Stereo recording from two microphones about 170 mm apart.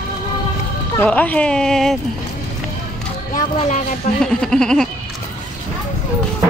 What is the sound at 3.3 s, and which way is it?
Speech, 55° left (ahead or behind).